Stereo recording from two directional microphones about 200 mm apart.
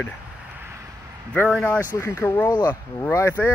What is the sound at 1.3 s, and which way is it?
Speech, 5° left (ahead or behind).